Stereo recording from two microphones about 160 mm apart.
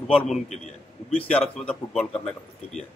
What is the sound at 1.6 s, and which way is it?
Speech, 5° left (ahead or behind).